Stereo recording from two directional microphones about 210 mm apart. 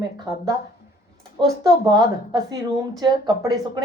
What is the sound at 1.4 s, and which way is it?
Speech, 20° right (ahead or behind).